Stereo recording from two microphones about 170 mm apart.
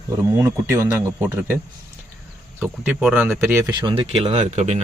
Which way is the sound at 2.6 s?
10° right (ahead or behind).